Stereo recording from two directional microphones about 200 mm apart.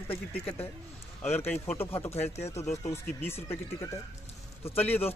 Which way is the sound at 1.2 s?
10° left (ahead or behind).